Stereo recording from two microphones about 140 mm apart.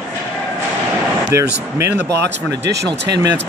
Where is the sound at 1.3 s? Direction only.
20° right (ahead or behind).